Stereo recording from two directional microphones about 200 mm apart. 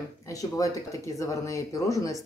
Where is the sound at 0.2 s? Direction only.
15° left (ahead or behind).